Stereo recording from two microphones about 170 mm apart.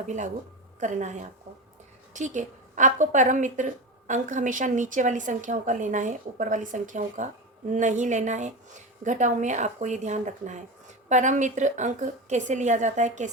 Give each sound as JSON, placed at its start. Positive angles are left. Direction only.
{"t": 0.8, "sound": "a woman's voice", "side_deg": -45}